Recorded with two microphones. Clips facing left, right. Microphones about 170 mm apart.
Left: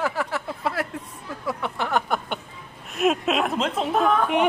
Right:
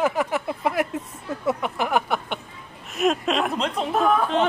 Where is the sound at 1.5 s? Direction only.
15° right (ahead or behind).